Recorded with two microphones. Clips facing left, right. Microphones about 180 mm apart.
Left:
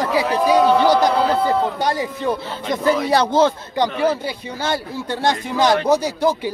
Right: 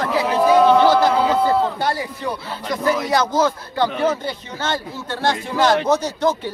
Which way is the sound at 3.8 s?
10° left (ahead or behind).